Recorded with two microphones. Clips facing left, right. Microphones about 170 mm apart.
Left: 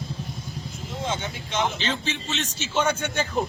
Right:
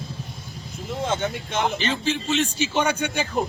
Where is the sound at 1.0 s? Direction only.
55° right (ahead or behind).